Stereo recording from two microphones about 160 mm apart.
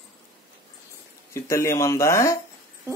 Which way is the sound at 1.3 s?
20° left (ahead or behind).